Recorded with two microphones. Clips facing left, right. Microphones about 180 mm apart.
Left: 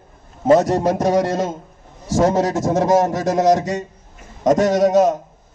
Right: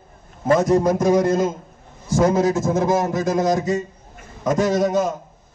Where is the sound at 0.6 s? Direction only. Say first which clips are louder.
Right 1 dB; 70° left (ahead or behind).